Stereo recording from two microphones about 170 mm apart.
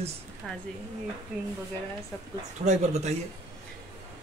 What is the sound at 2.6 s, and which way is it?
Speech, 40° right (ahead or behind).